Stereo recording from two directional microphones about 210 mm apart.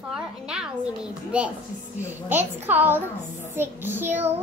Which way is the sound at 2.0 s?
10° right (ahead or behind).